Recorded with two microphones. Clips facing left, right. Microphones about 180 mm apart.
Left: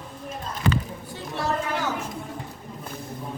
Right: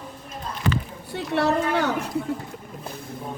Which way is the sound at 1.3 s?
65° right (ahead or behind).